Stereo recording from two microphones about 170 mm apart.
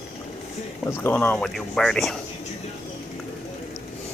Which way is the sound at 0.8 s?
15° left (ahead or behind).